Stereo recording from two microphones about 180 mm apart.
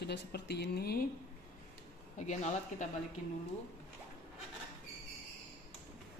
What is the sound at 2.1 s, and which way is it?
Speech, 40° left (ahead or behind).